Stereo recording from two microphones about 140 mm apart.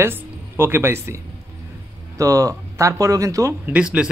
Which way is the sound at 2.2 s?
25° right (ahead or behind).